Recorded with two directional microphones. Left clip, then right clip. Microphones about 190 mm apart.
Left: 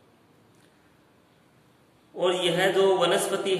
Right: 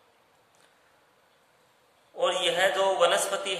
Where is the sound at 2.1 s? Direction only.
20° right (ahead or behind).